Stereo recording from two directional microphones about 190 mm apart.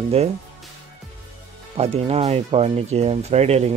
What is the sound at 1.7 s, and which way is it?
Speech, 35° right (ahead or behind).